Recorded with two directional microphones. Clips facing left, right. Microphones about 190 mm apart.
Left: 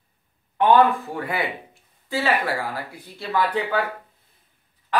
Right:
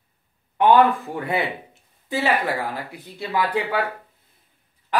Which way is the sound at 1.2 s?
25° right (ahead or behind).